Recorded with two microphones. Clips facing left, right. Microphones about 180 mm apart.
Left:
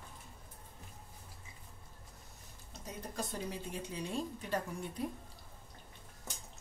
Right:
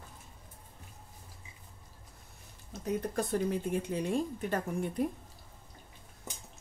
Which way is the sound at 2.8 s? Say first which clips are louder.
Right 10 dB; 55° right (ahead or behind).